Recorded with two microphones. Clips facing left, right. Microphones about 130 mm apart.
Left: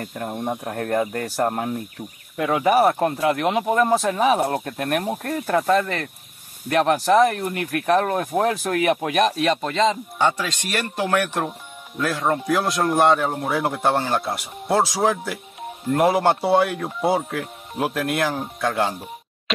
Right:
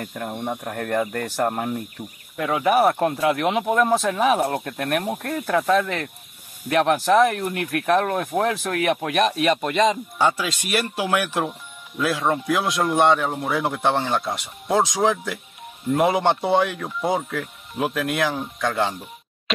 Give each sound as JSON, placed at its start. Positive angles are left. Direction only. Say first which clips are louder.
{"t": 0.0, "sound": "speech", "louder": "left 1 dB", "side_deg": 5}